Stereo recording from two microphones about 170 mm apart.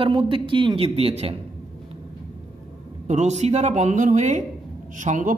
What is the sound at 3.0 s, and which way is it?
A man's voice, 40° right (ahead or behind).